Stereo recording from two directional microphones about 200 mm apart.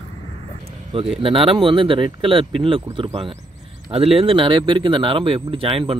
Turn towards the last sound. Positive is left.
turn(degrees=-25)  # may be behind; listen again after turning